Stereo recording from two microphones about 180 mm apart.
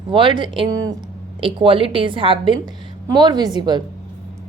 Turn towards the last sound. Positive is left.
turn(degrees=-25)  # may be behind; listen again after turning